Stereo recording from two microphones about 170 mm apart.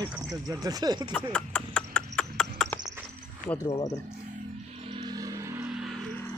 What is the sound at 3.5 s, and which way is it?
Speech, 25° left (ahead or behind).